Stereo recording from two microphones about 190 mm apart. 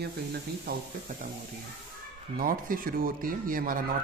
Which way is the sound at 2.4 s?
50° right (ahead or behind).